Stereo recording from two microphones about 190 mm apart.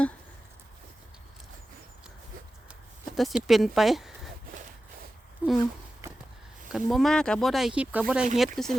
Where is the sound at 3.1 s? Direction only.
Centre (ahead or behind).